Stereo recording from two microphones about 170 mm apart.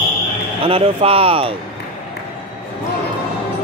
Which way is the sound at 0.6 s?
35° right (ahead or behind).